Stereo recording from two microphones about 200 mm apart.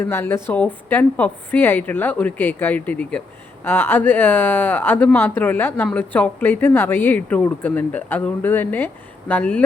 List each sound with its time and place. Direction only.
0.0 s a woman's voice: 10° left (ahead or behind)